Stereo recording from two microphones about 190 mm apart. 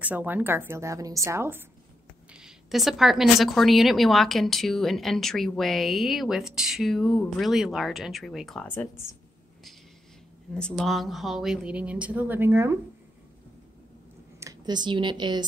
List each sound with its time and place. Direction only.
0.0 s speech: 10° right (ahead or behind)
2.3 s speech: centre (ahead or behind)
10.5 s speech: 5° left (ahead or behind)
14.4 s speech: 20° right (ahead or behind)